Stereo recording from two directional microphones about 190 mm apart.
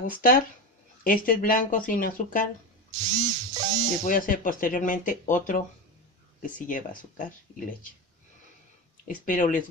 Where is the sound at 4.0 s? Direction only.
45° left (ahead or behind).